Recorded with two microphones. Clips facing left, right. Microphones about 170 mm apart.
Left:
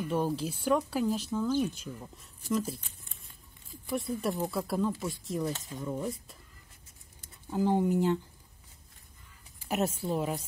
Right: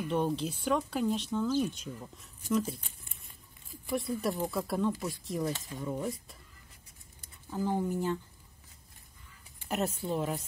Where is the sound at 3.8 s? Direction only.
Centre (ahead or behind).